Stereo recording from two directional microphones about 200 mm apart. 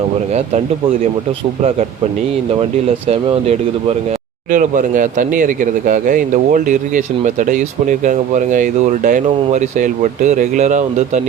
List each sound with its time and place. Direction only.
2.6 s speech: 30° right (ahead or behind)